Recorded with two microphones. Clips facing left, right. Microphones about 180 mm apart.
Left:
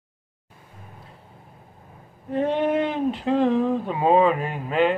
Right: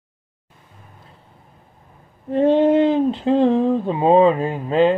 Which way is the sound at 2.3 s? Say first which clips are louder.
Right 7 dB; 30° right (ahead or behind).